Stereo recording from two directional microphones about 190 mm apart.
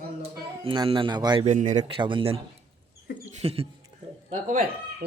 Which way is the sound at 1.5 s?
40° right (ahead or behind).